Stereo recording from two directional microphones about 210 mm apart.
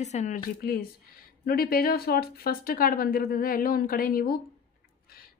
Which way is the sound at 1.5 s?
45° left (ahead or behind).